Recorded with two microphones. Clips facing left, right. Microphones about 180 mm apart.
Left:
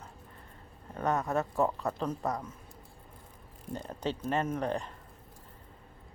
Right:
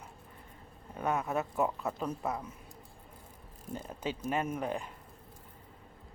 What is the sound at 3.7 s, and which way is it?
Speech, 5° right (ahead or behind).